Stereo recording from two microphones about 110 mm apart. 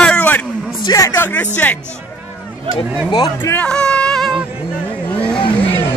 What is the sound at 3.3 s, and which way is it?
Speech, 15° left (ahead or behind).